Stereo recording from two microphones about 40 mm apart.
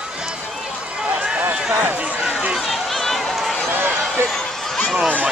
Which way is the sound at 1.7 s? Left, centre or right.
Right.